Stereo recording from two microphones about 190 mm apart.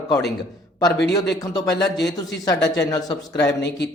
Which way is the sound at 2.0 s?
20° left (ahead or behind).